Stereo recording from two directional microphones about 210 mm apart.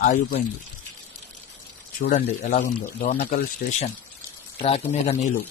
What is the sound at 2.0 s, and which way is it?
Speech, 45° left (ahead or behind).